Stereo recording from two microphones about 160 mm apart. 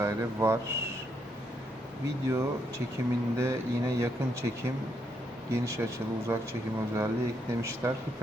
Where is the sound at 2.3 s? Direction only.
15° right (ahead or behind).